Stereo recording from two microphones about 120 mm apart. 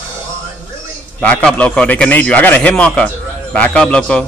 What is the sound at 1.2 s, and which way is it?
A man's voice, 10° left (ahead or behind).